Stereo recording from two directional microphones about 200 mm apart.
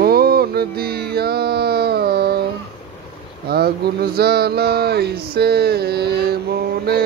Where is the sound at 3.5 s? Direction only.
50° right (ahead or behind).